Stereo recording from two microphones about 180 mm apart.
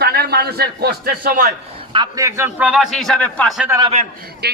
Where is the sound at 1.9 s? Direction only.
20° right (ahead or behind); by 3.6 s 5° left (ahead or behind).